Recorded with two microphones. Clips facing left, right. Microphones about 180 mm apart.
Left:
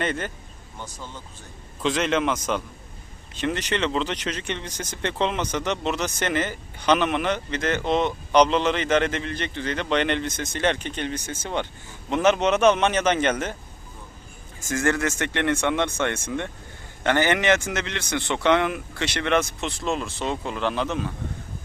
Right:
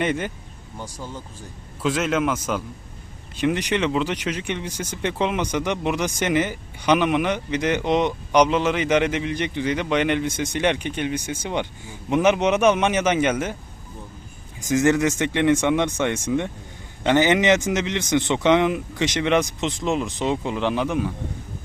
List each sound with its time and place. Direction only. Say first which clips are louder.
0.0 s a man's voice: right 3 dB; 10° right (ahead or behind)
14.6 s speech: right 5 dB; 15° right (ahead or behind)